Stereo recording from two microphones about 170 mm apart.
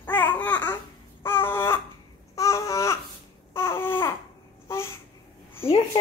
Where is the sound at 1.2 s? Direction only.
15° left (ahead or behind).